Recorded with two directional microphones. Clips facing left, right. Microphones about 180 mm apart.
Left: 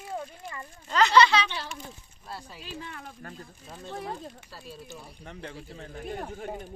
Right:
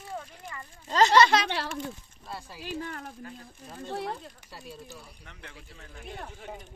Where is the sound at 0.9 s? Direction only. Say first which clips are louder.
Even; 40° right (ahead or behind).